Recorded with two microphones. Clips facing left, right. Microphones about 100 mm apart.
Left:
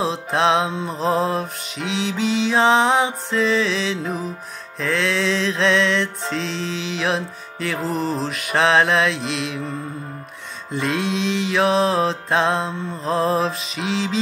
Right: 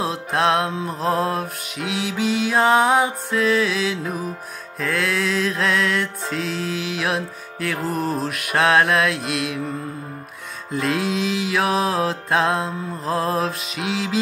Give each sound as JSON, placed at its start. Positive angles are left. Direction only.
{"t": 0.0, "sound": "music", "side_deg": 0}
{"t": 10.7, "sound": "music", "side_deg": 0}